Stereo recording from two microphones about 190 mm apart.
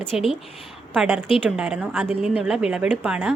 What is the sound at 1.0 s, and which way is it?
A woman's voice, 10° right (ahead or behind).